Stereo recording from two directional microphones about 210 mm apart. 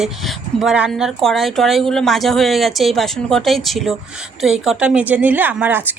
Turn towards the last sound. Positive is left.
turn(degrees=-10)  # may be behind; listen again after turning